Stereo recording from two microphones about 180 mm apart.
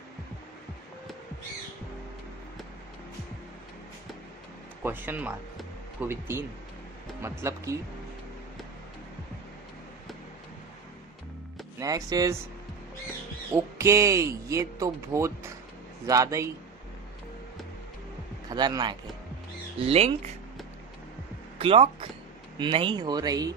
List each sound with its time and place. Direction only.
4.8 s speech: 10° right (ahead or behind)
11.8 s speech: 20° right (ahead or behind)
13.5 s speech: 15° right (ahead or behind)
18.5 s speech: 25° right (ahead or behind)
19.9 s speech: 35° right (ahead or behind)
21.5 s speech: 30° right (ahead or behind)